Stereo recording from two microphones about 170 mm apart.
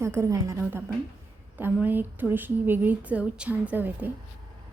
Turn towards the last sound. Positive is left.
turn(degrees=-10)  # may be behind; listen again after turning